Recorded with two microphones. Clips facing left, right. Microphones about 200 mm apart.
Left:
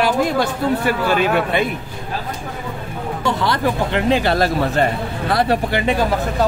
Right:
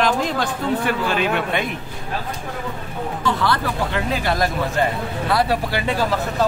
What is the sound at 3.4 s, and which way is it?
Speech, 20° left (ahead or behind).